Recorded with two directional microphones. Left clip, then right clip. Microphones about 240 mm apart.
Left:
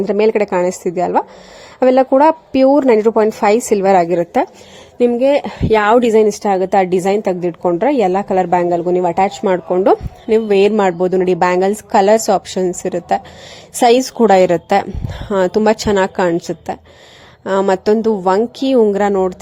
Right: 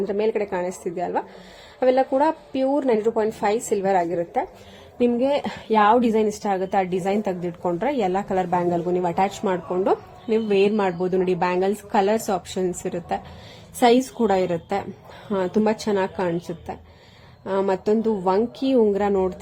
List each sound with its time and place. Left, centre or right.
0.1 s a woman's voice: left